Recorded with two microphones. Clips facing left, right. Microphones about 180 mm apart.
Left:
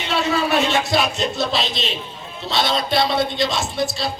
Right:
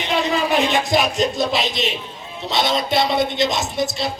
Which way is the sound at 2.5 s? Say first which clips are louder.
Right 1 dB; 20° right (ahead or behind).